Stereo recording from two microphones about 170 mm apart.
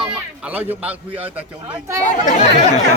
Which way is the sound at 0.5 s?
10° right (ahead or behind).